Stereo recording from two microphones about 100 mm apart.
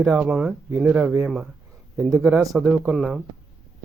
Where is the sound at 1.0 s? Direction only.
25° right (ahead or behind).